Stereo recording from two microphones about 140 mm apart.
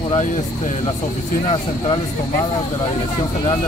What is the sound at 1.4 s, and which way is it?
Speech, 40° left (ahead or behind).